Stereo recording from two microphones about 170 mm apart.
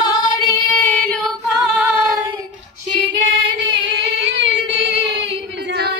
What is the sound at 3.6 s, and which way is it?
Singing, 90° right.